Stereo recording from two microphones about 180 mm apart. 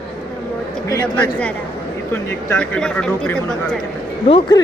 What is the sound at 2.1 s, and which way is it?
Speech, 10° left (ahead or behind).